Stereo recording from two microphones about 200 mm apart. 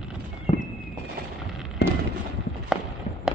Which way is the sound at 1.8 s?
55° left (ahead or behind).